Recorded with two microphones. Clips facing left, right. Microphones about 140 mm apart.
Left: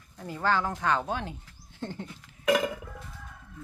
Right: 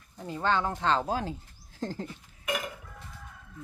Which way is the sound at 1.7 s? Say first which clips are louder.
Right 2 dB; 40° right (ahead or behind).